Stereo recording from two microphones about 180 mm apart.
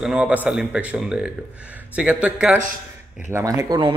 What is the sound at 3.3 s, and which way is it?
Speech, 20° right (ahead or behind).